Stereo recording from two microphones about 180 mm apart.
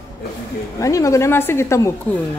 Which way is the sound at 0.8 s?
15° left (ahead or behind).